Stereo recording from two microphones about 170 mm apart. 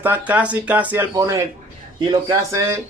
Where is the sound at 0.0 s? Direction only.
10° right (ahead or behind).